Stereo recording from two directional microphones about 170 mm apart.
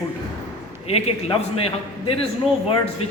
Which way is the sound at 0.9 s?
35° left (ahead or behind).